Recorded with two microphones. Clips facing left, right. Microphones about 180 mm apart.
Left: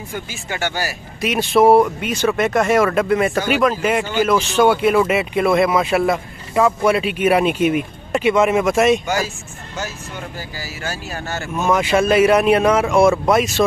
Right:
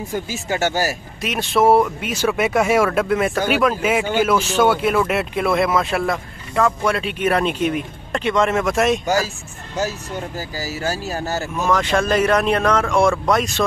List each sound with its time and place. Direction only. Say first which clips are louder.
0.1 s speech: right 4 dB; 40° right (ahead or behind)
1.2 s speech: left 3 dB; centre (ahead or behind)
4.0 s speech: even; 55° right (ahead or behind)
4.3 s speech: left 4 dB; 5° right (ahead or behind)
9.8 s speech: right 5 dB; 35° right (ahead or behind)
11.6 s speech: left 3 dB; 5° left (ahead or behind)